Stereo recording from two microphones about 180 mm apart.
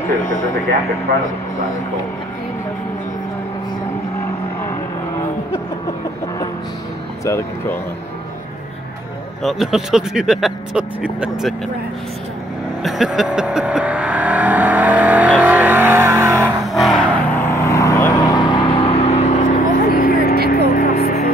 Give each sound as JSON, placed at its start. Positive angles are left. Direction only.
{"t": 7.2, "sound": "speech", "side_deg": 15}
{"t": 9.4, "sound": "speech", "side_deg": 0}
{"t": 12.8, "sound": "vehicle", "side_deg": 0}
{"t": 16.4, "sound": "music", "side_deg": 0}
{"t": 17.5, "sound": "vehicle", "side_deg": 15}
{"t": 20.4, "sound": "music", "side_deg": 55}